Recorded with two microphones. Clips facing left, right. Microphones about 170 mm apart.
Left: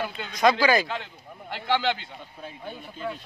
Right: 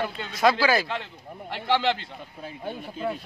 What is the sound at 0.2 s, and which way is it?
A man's voice, 5° right (ahead or behind).